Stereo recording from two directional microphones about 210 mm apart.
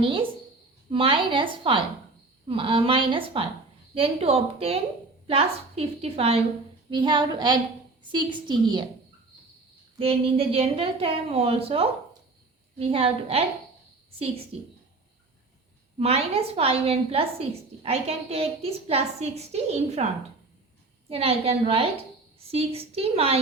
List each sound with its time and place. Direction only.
0.0 s a woman's voice: 25° right (ahead or behind)
10.0 s a woman's voice: 25° right (ahead or behind)
16.0 s a woman's voice: 30° right (ahead or behind)
21.1 s a woman's voice: 30° right (ahead or behind)